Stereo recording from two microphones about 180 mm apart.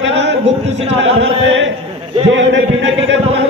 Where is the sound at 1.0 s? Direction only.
90° right.